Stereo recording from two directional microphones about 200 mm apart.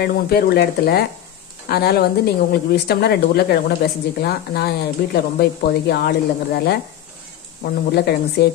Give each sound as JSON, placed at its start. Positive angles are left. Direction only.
{"t": 0.0, "sound": "speech", "side_deg": 50}